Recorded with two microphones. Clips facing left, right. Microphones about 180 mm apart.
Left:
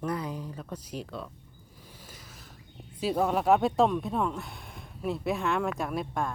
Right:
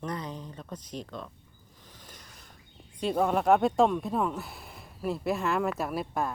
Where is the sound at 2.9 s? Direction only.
5° left (ahead or behind).